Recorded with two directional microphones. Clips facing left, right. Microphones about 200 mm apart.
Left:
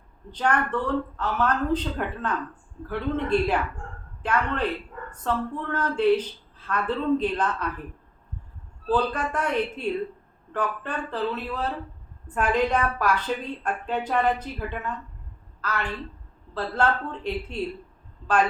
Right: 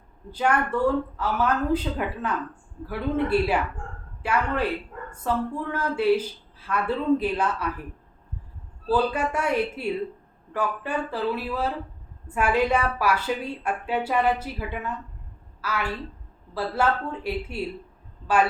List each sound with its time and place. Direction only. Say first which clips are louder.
0.3 s a woman's voice: right 1 dB; 10° right (ahead or behind)
8.9 s a woman's voice: right 1 dB; 10° right (ahead or behind)